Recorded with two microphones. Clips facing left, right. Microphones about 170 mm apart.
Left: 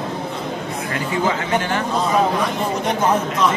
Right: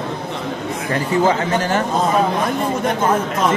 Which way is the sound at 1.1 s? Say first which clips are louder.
Right 4 dB; 40° right (ahead or behind).